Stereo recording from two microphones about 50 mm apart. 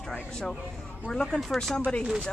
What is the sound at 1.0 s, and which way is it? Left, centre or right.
Speech, centre.